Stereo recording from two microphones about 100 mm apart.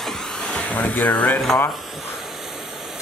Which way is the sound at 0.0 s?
10° left (ahead or behind).